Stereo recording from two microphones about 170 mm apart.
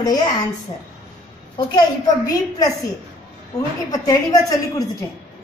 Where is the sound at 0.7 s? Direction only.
35° left (ahead or behind).